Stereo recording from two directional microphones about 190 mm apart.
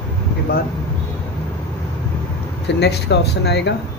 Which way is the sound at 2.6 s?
65° left (ahead or behind).